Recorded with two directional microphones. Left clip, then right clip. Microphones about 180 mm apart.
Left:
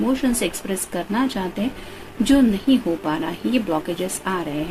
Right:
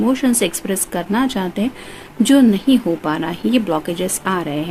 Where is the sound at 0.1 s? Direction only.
55° right (ahead or behind).